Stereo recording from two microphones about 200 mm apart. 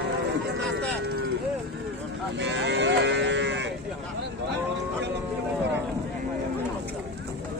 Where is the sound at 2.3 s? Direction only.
60° right (ahead or behind).